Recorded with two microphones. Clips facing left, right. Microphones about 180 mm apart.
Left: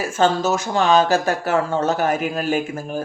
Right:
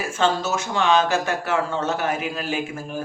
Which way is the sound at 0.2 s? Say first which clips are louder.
Left 4 dB; 40° left (ahead or behind).